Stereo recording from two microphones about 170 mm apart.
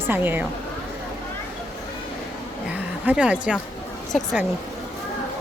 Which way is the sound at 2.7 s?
5° right (ahead or behind).